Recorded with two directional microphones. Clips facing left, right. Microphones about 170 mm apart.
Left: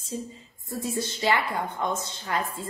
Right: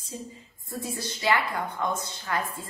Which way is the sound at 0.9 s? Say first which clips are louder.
Left 1 dB; 25° left (ahead or behind).